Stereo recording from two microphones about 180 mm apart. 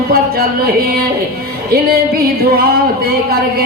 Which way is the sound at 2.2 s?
60° right (ahead or behind).